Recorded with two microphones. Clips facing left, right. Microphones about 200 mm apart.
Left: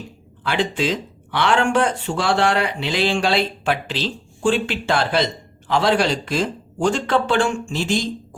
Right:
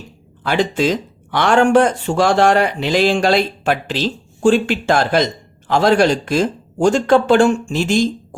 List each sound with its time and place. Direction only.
0.4 s speech: 40° right (ahead or behind)